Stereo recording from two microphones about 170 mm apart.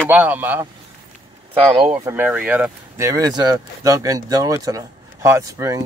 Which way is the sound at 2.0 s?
10° right (ahead or behind).